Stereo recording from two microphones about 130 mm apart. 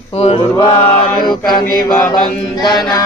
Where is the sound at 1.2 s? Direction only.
35° left (ahead or behind).